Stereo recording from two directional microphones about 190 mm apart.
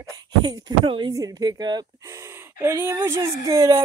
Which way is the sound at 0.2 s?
20° right (ahead or behind).